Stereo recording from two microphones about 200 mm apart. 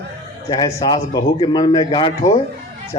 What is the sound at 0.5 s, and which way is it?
A man's voice, 20° left (ahead or behind).